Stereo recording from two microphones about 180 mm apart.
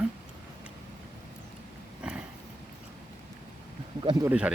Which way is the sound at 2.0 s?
5° right (ahead or behind).